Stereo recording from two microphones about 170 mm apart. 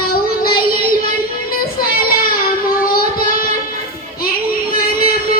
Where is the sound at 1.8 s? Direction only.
60° left (ahead or behind).